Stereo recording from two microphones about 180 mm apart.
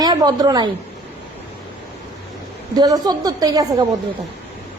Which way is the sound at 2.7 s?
20° right (ahead or behind).